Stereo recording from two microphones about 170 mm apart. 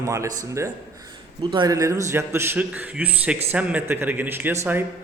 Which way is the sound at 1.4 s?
30° right (ahead or behind).